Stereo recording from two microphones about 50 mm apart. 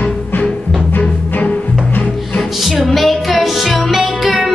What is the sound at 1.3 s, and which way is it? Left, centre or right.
Music, left.